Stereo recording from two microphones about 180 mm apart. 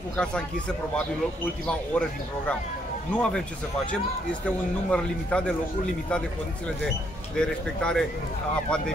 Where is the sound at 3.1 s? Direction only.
5° left (ahead or behind).